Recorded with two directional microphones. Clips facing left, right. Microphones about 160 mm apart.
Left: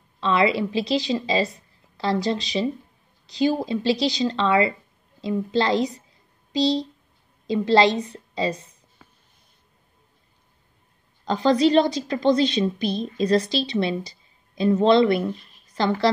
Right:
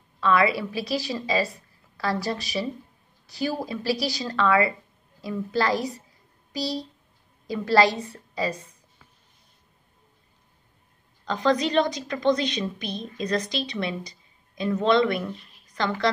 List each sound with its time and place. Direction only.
0.2 s a woman's voice: 25° left (ahead or behind)
11.2 s a woman's voice: 30° left (ahead or behind)